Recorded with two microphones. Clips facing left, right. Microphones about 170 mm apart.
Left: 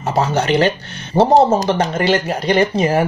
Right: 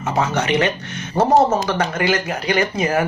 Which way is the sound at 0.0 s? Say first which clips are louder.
Left 3 dB; 35° left (ahead or behind).